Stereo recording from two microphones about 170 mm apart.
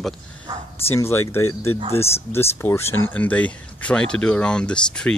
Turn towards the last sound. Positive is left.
turn(degrees=5)  # may be behind; listen again after turning